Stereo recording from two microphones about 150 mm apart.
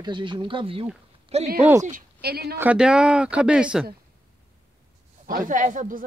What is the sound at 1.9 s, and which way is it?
Speech, 75° right (ahead or behind).